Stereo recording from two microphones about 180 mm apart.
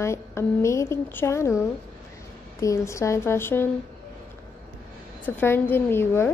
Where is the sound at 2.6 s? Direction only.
15° left (ahead or behind).